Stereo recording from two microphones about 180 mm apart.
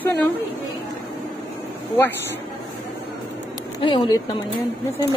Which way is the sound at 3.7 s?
25° left (ahead or behind).